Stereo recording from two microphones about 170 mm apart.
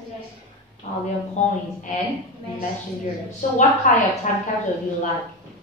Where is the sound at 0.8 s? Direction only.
40° left (ahead or behind).